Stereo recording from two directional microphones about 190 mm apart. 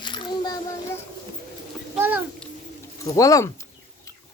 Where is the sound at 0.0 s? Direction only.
25° left (ahead or behind).